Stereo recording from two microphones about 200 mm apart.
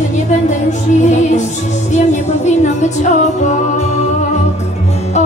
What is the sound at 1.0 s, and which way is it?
Music, 35° left (ahead or behind).